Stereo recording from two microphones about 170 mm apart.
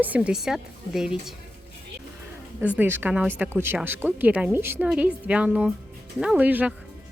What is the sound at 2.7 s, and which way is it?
A woman's voice, 10° right (ahead or behind).